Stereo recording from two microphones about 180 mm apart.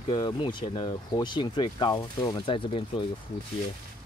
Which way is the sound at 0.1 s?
25° left (ahead or behind).